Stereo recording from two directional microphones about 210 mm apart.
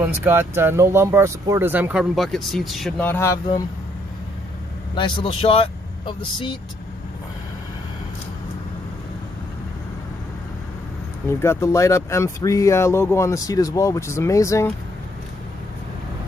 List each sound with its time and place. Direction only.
0.0 s speech: 10° right (ahead or behind); by 3.3 s 10° left (ahead or behind)
4.9 s speech: 25° left (ahead or behind)
11.2 s speech: 15° left (ahead or behind)